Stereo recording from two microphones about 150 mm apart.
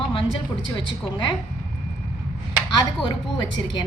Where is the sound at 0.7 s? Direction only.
30° left (ahead or behind).